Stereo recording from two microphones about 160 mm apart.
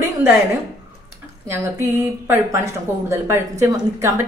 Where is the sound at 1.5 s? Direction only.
15° right (ahead or behind).